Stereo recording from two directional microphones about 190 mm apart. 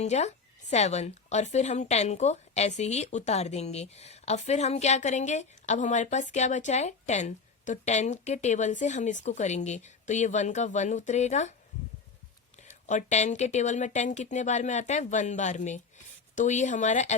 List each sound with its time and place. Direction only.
0.0 s a woman's voice: 35° left (ahead or behind)
12.6 s a woman's voice: 40° left (ahead or behind)